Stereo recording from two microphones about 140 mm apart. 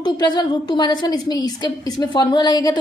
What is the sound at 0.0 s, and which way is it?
A woman's voice, 30° left (ahead or behind).